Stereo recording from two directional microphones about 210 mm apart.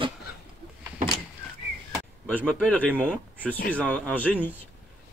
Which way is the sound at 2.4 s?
Centre (ahead or behind).